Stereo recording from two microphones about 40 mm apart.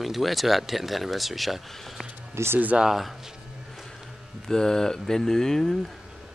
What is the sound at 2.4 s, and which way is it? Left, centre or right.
Speech, right.